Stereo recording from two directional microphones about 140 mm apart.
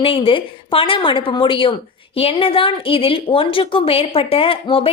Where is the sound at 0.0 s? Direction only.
40° left (ahead or behind).